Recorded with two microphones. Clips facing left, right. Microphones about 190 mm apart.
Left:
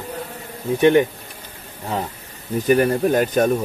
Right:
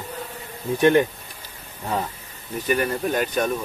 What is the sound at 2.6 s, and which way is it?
Speech, 40° left (ahead or behind).